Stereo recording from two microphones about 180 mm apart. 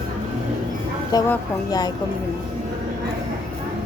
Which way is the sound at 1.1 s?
20° left (ahead or behind).